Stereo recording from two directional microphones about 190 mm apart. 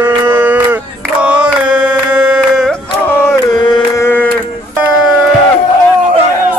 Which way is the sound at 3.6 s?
20° left (ahead or behind).